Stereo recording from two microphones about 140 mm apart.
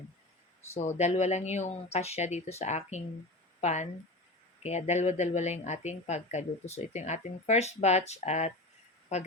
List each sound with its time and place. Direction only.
0.8 s speech: 55° left (ahead or behind)